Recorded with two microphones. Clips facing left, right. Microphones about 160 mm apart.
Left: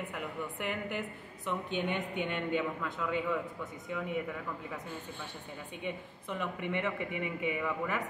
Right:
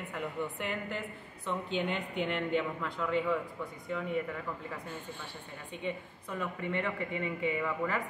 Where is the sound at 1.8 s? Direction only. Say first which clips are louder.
Right 1 dB; 15° left (ahead or behind).